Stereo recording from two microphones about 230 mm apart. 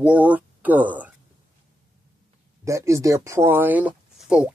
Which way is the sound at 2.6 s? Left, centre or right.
Centre.